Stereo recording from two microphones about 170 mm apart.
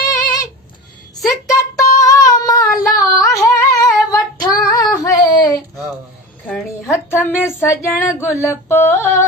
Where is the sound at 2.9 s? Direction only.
20° left (ahead or behind).